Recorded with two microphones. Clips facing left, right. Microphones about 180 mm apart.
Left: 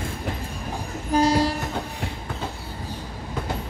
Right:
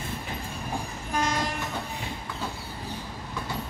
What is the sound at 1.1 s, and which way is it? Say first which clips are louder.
Train: left 9 dB; 35° left (ahead or behind).